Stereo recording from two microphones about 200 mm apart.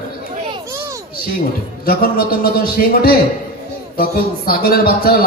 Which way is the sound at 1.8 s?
50° left (ahead or behind).